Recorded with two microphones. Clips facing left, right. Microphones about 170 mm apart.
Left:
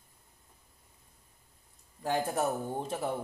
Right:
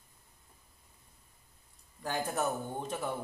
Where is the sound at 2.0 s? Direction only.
30° left (ahead or behind).